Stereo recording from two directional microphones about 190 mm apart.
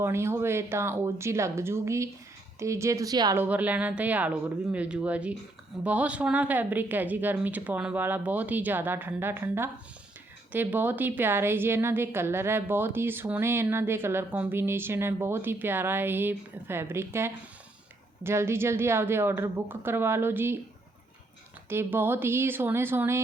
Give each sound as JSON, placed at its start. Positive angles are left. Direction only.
{"t": 0.0, "sound": "a woman's voice", "side_deg": -15}
{"t": 3.4, "sound": "a woman's voice", "side_deg": -10}
{"t": 21.7, "sound": "a woman's voice", "side_deg": -10}